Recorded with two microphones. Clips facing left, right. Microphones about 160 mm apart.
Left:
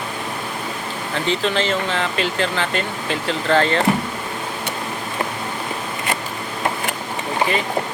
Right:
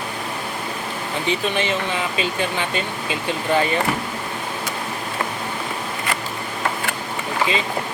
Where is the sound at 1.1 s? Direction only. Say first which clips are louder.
Left 2 dB; 15° right (ahead or behind).